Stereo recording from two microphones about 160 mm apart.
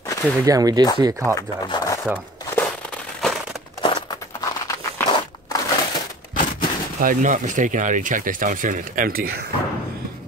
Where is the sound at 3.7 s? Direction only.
25° left (ahead or behind).